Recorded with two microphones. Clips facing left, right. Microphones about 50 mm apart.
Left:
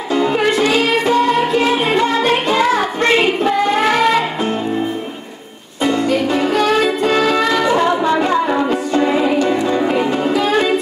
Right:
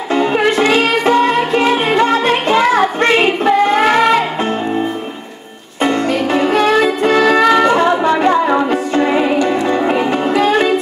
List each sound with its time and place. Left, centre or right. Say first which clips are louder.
0.1 s music: right 2 dB; right
5.8 s music: right 1 dB; right